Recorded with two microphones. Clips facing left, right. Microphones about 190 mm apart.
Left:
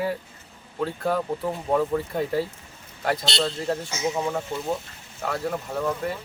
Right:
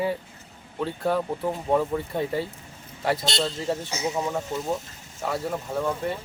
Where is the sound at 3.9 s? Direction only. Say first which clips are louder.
Left 2 dB; 35° right (ahead or behind).